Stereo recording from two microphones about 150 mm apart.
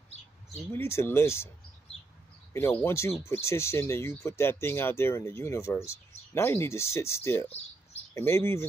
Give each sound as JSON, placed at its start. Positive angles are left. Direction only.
{"t": 0.7, "sound": "speech", "side_deg": 15}
{"t": 2.8, "sound": "speech", "side_deg": 20}